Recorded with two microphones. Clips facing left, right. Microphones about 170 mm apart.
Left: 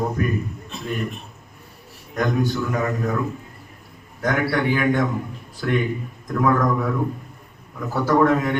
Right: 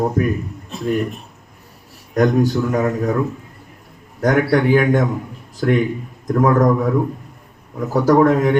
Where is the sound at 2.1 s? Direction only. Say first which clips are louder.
Right 7 dB; 40° right (ahead or behind).